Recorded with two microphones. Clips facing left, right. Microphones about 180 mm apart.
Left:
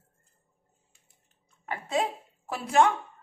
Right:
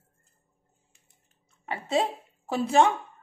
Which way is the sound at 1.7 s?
30° right (ahead or behind).